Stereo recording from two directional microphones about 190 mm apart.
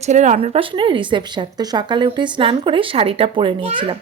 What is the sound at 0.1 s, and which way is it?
Speech, 40° right (ahead or behind).